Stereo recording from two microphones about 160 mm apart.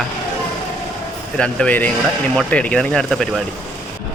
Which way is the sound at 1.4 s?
10° left (ahead or behind).